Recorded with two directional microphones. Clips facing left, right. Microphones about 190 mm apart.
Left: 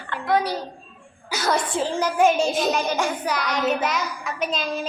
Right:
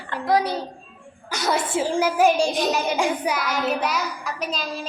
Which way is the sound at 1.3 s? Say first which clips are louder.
Even; centre (ahead or behind).